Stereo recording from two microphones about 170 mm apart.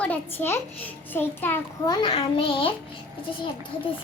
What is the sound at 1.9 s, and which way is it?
Speech, 30° left (ahead or behind).